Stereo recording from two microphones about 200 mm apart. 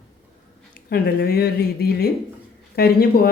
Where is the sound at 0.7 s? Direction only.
45° left (ahead or behind).